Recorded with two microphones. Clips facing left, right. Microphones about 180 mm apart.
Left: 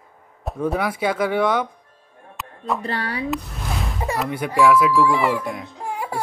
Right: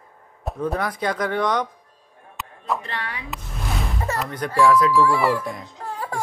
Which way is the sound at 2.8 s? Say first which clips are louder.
Left 6 dB; 35° left (ahead or behind).